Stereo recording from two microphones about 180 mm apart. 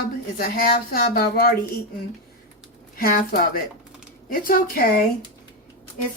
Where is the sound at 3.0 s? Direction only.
55° left (ahead or behind).